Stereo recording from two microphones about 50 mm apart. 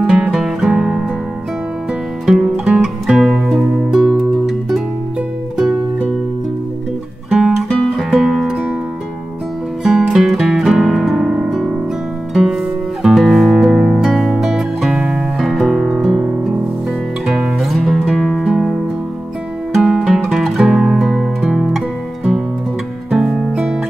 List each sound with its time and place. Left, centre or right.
0.3 s music: centre
2.2 s music: centre
4.5 s music: centre
7.2 s music: centre
9.8 s music: centre
13.0 s music: centre
13.7 s music: centre
14.1 s music: centre
18.4 s music: centre